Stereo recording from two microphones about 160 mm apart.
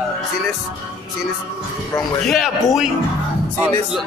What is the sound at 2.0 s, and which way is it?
Speech, centre (ahead or behind).